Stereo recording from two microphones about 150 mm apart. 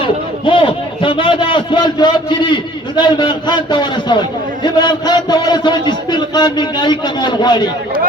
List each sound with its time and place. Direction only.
0.0 s a man's voice: 35° left (ahead or behind)